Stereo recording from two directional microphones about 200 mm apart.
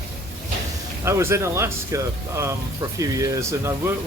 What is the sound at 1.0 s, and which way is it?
Speech, 15° right (ahead or behind).